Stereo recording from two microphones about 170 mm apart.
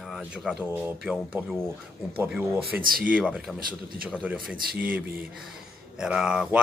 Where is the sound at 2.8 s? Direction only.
55° right (ahead or behind).